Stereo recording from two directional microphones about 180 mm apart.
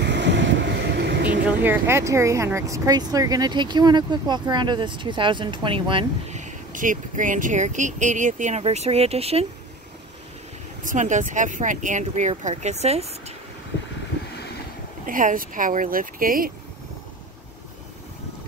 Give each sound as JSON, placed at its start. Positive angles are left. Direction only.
{"t": 0.0, "sound": "boat", "side_deg": -75}
{"t": 1.6, "sound": "speech", "side_deg": -15}
{"t": 6.3, "sound": "speech", "side_deg": -45}
{"t": 10.8, "sound": "speech", "side_deg": -45}
{"t": 15.0, "sound": "speech", "side_deg": -50}